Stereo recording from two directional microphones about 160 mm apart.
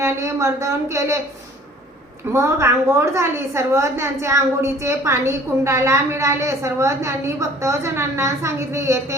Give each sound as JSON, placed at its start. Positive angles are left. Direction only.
{"t": 0.0, "sound": "speech", "side_deg": -20}
{"t": 2.3, "sound": "a woman's voice", "side_deg": -15}